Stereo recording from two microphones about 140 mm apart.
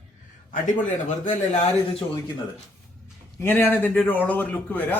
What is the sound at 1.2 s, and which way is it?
Speech, 55° left (ahead or behind).